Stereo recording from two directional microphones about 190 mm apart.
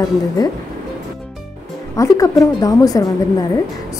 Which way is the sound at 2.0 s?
15° left (ahead or behind).